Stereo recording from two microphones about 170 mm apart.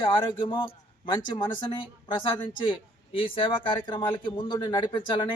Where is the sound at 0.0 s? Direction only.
30° left (ahead or behind).